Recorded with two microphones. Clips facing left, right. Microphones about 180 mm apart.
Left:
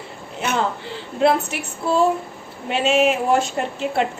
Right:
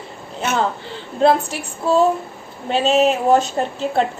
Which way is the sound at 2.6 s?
35° right (ahead or behind).